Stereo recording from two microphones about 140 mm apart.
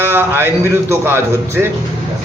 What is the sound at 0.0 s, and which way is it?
Speech, 15° right (ahead or behind).